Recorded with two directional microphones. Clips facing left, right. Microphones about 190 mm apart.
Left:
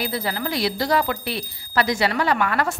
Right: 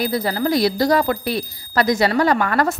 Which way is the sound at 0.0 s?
40° right (ahead or behind).